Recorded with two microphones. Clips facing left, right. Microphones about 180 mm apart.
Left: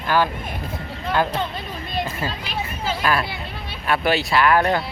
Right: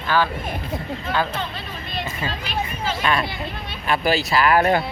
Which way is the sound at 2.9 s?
5° left (ahead or behind).